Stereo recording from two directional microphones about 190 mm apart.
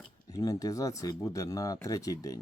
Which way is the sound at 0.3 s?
20° left (ahead or behind).